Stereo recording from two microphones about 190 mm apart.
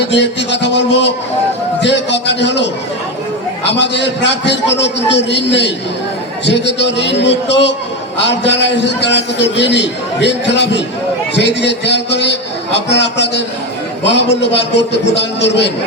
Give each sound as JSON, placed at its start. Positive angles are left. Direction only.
{"t": 0.1, "sound": "a man's voice", "side_deg": 65}